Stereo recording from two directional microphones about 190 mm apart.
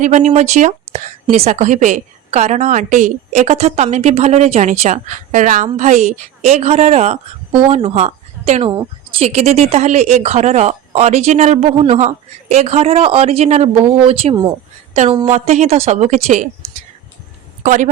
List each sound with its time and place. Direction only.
0.0 s a woman's voice: 40° right (ahead or behind)